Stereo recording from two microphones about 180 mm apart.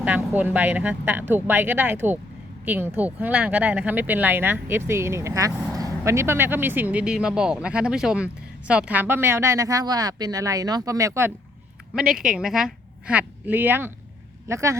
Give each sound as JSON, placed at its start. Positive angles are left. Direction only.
{"t": 0.0, "sound": "speech", "side_deg": -10}
{"t": 11.9, "sound": "a woman's voice", "side_deg": -5}